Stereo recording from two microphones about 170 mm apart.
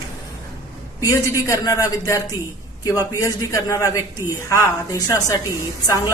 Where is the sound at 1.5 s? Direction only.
20° left (ahead or behind).